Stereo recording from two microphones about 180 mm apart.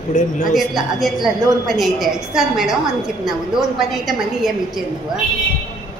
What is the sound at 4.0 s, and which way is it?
A woman's voice, centre (ahead or behind).